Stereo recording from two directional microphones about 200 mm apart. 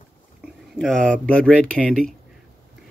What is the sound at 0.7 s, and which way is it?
Speech, centre (ahead or behind).